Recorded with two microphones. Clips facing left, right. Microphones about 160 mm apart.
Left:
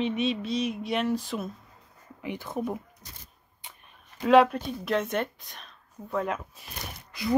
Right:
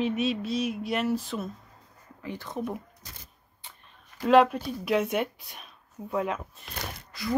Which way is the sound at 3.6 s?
15° left (ahead or behind).